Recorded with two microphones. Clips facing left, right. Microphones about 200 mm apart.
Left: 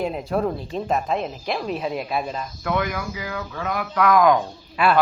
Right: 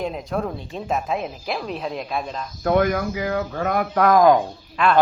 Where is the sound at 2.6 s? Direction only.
45° right (ahead or behind).